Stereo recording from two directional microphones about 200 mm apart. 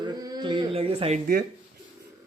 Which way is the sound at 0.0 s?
20° right (ahead or behind).